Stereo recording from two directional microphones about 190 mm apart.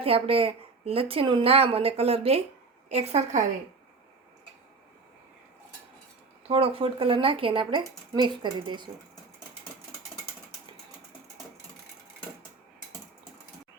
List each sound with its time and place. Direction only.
0.0 s a woman's voice: 30° right (ahead or behind)
6.5 s a woman's voice: 30° right (ahead or behind)